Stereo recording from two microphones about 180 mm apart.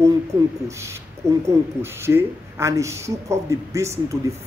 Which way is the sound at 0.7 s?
15° right (ahead or behind).